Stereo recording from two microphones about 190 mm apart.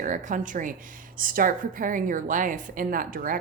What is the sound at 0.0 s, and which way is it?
A woman's voice, 40° right (ahead or behind).